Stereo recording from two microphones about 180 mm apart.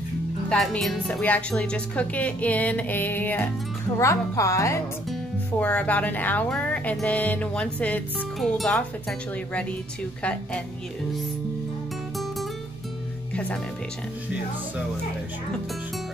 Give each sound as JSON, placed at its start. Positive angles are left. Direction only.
{"t": 0.5, "sound": "speech", "side_deg": 5}
{"t": 13.3, "sound": "speech", "side_deg": 5}